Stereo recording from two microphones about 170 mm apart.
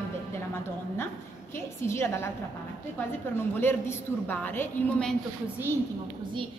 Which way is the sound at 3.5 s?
10° left (ahead or behind).